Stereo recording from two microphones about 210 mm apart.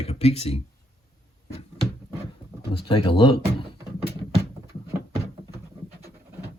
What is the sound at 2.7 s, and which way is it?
Speech, 25° left (ahead or behind).